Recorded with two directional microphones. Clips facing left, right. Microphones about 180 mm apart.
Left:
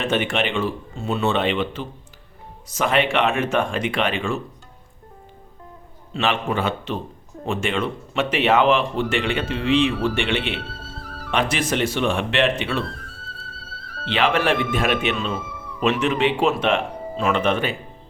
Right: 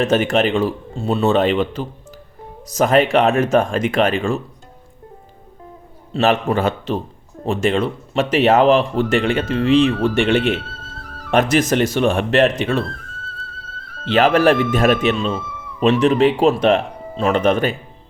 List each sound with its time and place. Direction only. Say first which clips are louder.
0.0 s speech: right 6 dB; 40° right (ahead or behind)
6.1 s speech: right 6 dB; 40° right (ahead or behind)
14.0 s speech: right 7 dB; 40° right (ahead or behind)